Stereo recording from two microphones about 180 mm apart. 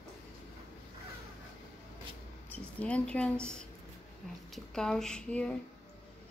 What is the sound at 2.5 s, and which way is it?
Speech, 5° left (ahead or behind).